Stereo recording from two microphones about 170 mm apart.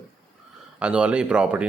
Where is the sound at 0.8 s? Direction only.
5° right (ahead or behind).